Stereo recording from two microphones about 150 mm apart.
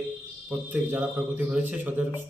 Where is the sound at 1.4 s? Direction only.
10° right (ahead or behind).